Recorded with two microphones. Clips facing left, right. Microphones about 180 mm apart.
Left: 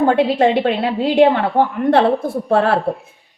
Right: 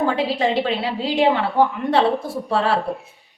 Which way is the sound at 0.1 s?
60° left (ahead or behind).